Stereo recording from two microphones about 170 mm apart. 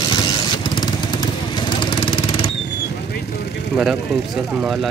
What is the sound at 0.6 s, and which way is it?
Vehicle, 25° left (ahead or behind).